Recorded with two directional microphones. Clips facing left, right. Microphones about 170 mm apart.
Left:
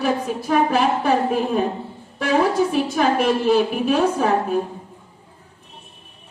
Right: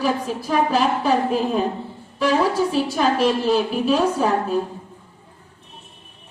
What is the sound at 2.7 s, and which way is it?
A woman's voice, 55° left (ahead or behind).